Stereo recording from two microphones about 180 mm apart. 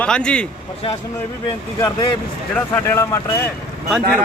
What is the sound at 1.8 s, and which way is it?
Speech, 25° left (ahead or behind).